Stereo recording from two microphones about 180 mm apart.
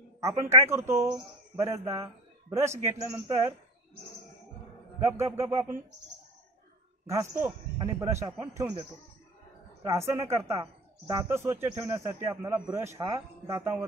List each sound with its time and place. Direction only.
0.2 s a man's voice: 15° right (ahead or behind)
5.0 s a man's voice: 15° right (ahead or behind)
7.1 s a man's voice: 15° right (ahead or behind)
9.8 s a man's voice: 15° right (ahead or behind)